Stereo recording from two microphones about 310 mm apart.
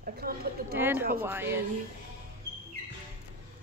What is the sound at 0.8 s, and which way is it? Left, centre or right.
Speech, centre.